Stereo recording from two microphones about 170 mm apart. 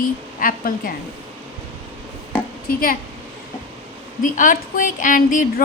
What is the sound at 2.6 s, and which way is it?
Speech, 55° left (ahead or behind).